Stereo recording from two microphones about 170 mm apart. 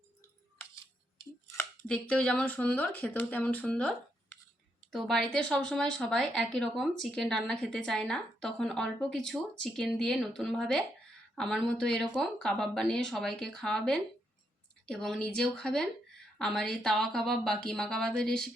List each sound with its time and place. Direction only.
0.6 s scissors: 20° left (ahead or behind)
1.9 s speech: 5° left (ahead or behind)